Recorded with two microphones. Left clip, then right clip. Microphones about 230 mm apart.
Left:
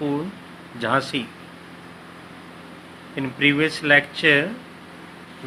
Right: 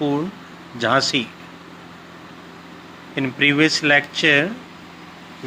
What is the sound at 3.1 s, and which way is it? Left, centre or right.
Speech, right.